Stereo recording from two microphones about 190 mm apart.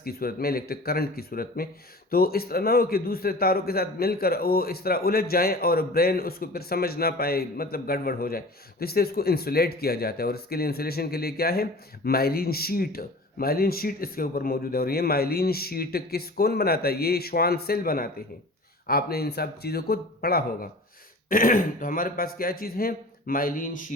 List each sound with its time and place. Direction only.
0.0 s a man's voice: 50° left (ahead or behind)